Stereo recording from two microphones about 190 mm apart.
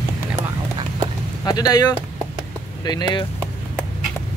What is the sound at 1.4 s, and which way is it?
Speech, 20° left (ahead or behind).